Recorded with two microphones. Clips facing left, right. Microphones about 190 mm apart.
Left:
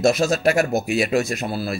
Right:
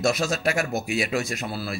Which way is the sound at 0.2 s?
40° left (ahead or behind).